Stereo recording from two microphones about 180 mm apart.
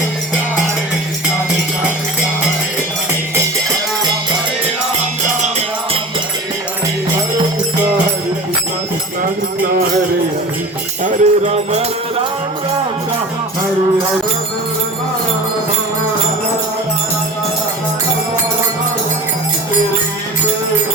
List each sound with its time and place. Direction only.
11.0 s music: 40° right (ahead or behind)